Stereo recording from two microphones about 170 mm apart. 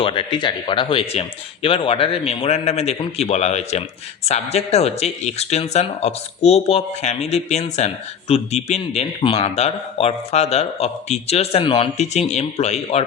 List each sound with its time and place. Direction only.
0.0 s a man's voice: 30° left (ahead or behind)